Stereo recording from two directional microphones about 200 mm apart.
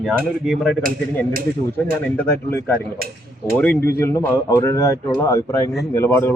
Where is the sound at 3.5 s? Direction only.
5° left (ahead or behind).